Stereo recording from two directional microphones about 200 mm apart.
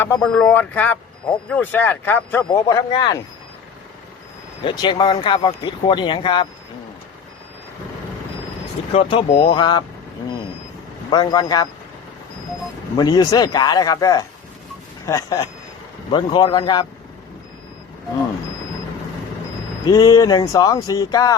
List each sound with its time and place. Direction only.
0.0 s speech: 5° left (ahead or behind)
2.5 s speech: 20° left (ahead or behind)
4.6 s speech: 20° left (ahead or behind)
8.9 s speech: 25° left (ahead or behind)
11.1 s speech: 20° left (ahead or behind)
13.0 s speech: 20° left (ahead or behind)
19.9 s speech: 20° left (ahead or behind)